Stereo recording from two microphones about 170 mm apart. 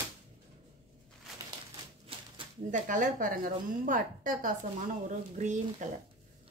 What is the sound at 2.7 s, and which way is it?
A woman's voice, 50° right (ahead or behind).